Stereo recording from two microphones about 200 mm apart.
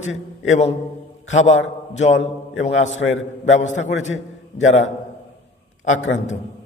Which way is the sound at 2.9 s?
70° left (ahead or behind).